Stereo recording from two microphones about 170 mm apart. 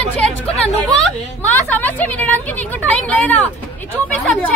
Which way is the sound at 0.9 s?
5° left (ahead or behind).